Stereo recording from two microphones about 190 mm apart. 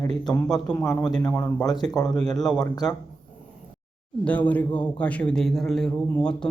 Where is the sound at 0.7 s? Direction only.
10° left (ahead or behind).